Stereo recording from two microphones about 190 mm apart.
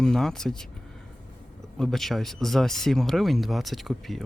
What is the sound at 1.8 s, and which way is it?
Speech, centre (ahead or behind).